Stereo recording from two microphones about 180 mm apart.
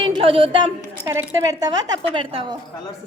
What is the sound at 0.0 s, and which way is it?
A woman's voice, 30° right (ahead or behind).